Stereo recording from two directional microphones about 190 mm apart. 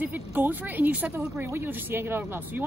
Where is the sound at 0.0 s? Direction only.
10° right (ahead or behind).